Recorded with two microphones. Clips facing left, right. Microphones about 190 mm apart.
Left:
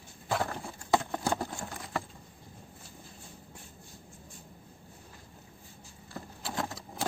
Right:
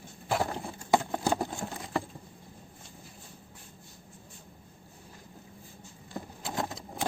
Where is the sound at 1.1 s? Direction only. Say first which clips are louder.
Right 3 dB; 15° right (ahead or behind).